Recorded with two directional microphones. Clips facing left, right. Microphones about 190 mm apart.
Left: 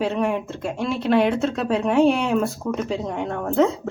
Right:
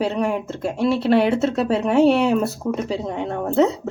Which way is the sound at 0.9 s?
35° right (ahead or behind).